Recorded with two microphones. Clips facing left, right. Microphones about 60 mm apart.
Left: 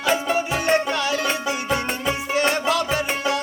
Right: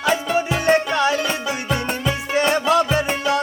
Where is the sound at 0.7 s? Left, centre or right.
Right.